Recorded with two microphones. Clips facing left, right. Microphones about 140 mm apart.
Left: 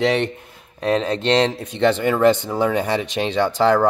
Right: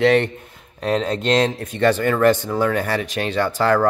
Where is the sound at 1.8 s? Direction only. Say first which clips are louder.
Even; 15° left (ahead or behind).